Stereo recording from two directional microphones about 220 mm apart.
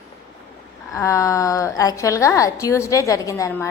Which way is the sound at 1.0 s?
15° left (ahead or behind).